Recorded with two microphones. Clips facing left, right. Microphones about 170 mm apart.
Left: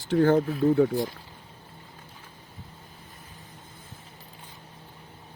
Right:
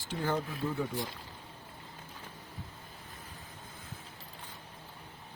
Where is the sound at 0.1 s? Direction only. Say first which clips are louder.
Left 13 dB; 50° left (ahead or behind).